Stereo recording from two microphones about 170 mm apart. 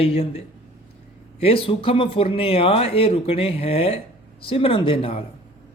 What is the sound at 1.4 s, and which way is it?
Speech, 35° left (ahead or behind).